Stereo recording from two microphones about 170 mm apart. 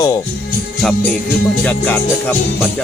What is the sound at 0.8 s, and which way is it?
Speech, centre (ahead or behind).